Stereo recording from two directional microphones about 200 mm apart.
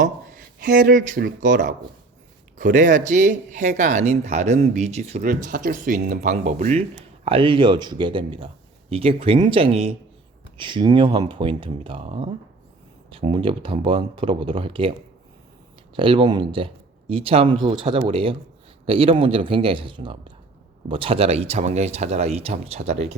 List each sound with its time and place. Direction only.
0.6 s speech: 45° right (ahead or behind); by 14.9 s 25° right (ahead or behind)
16.0 s speech: 25° right (ahead or behind)